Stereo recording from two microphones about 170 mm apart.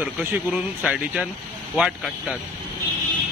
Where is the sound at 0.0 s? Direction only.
10° right (ahead or behind).